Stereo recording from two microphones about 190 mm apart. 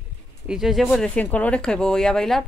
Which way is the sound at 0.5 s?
Centre (ahead or behind).